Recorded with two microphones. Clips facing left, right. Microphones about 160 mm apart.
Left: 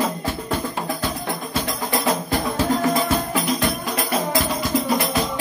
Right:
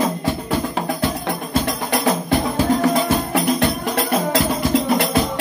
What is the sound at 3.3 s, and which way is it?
Music, 70° right (ahead or behind).